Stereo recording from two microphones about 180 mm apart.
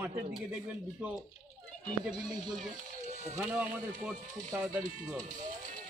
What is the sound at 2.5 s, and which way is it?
Speech, 40° right (ahead or behind).